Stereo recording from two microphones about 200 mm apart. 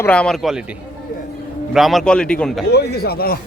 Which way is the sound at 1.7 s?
Centre (ahead or behind).